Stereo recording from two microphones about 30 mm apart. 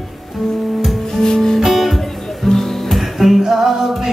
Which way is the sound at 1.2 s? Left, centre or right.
Centre.